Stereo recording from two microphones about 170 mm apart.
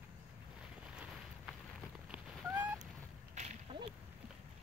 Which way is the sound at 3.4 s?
40° right (ahead or behind).